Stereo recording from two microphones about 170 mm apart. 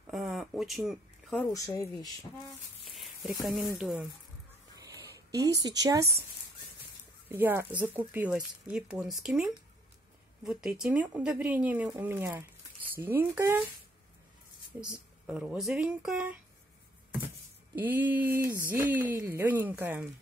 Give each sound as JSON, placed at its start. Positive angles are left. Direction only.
{"t": 0.0, "sound": "a sound", "side_deg": 0}
{"t": 1.5, "sound": "speech", "side_deg": 20}
{"t": 2.9, "sound": "a sound", "side_deg": 0}
{"t": 3.7, "sound": "speech", "side_deg": 0}
{"t": 4.7, "sound": "a sound", "side_deg": -20}
{"t": 5.7, "sound": "speech", "side_deg": -20}
{"t": 7.2, "sound": "speech", "side_deg": -10}
{"t": 14.7, "sound": "speech", "side_deg": -10}
{"t": 17.7, "sound": "speech", "side_deg": -10}